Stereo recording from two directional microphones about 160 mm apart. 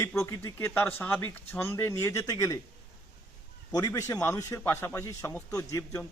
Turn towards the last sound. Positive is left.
turn(degrees=20)  # may be behind; listen again after turning